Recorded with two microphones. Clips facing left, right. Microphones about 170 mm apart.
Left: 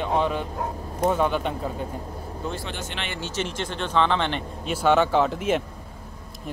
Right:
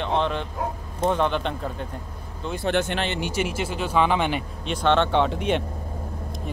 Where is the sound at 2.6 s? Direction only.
55° right (ahead or behind).